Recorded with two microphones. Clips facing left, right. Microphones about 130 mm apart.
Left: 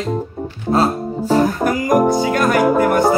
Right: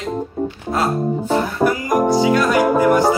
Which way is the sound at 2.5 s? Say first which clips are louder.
Left 1 dB; centre (ahead or behind).